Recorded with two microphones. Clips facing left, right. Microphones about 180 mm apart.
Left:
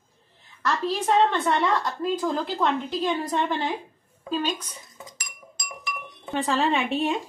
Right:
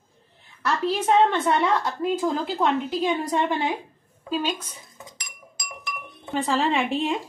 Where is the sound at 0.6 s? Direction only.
10° right (ahead or behind).